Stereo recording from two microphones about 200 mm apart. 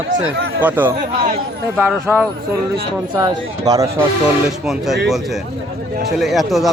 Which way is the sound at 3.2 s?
20° right (ahead or behind).